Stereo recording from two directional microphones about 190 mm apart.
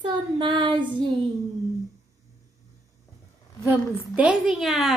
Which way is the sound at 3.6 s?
10° right (ahead or behind).